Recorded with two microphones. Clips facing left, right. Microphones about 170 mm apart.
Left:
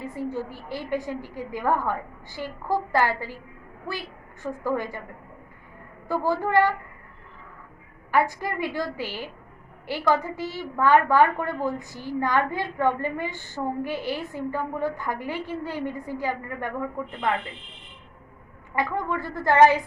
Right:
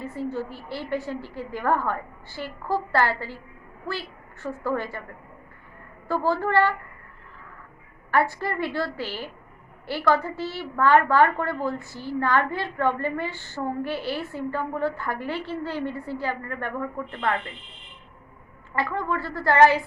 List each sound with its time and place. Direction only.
0.0 s a woman's voice: 15° left (ahead or behind)
4.4 s a woman's voice: 15° left (ahead or behind)
6.1 s a woman's voice: 15° left (ahead or behind)
8.1 s a woman's voice: 15° left (ahead or behind)
18.8 s a woman's voice: 15° left (ahead or behind)